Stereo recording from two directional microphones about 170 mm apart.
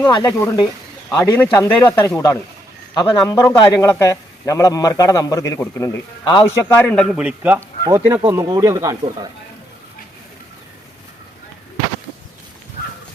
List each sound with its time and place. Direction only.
0.2 s a man's voice: 15° left (ahead or behind)
7.2 s speech: 10° right (ahead or behind)